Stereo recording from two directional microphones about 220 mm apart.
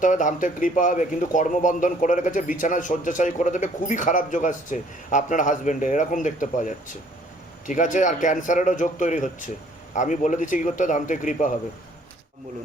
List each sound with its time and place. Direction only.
0.0 s speech: 35° left (ahead or behind)